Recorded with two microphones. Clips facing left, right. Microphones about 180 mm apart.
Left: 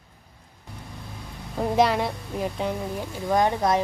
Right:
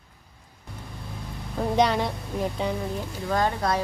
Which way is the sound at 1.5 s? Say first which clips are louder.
Left 1 dB; centre (ahead or behind).